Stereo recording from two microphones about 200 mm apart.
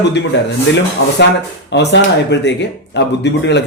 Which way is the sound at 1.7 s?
60° left (ahead or behind).